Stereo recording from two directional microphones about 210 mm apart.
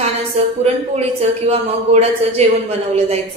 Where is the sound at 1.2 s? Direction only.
30° right (ahead or behind).